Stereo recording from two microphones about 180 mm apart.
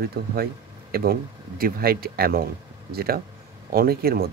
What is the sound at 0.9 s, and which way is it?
Speech, 55° right (ahead or behind).